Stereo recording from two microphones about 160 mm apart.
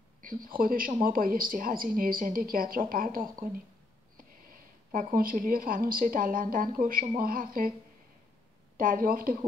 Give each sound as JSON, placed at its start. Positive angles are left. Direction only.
{"t": 0.2, "sound": "speech", "side_deg": -60}
{"t": 4.9, "sound": "speech", "side_deg": -65}
{"t": 8.7, "sound": "speech", "side_deg": -60}